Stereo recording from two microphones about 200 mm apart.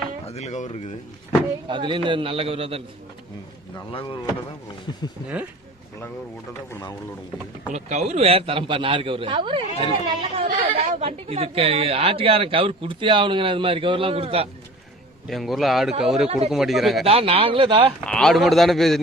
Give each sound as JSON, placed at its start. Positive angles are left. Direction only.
{"t": 0.3, "sound": "speech", "side_deg": 35}
{"t": 1.6, "sound": "a woman's voice", "side_deg": -25}
{"t": 3.8, "sound": "speech", "side_deg": 25}
{"t": 6.7, "sound": "speech", "side_deg": 15}
{"t": 7.7, "sound": "a woman's voice", "side_deg": -35}
{"t": 15.3, "sound": "a man's voice", "side_deg": 0}
{"t": 17.1, "sound": "a woman's voice", "side_deg": -30}
{"t": 18.0, "sound": "a man's voice", "side_deg": 5}